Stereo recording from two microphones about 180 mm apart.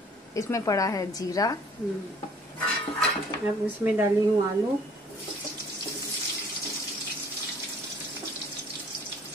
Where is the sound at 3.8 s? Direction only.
10° right (ahead or behind).